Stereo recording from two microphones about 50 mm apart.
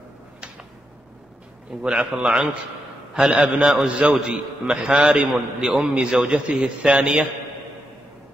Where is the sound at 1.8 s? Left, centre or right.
Centre.